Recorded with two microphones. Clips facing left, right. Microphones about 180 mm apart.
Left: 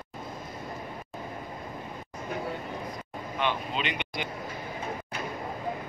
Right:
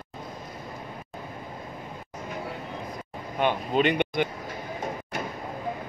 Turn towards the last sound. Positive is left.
turn(degrees=-50)  # may be behind; listen again after turning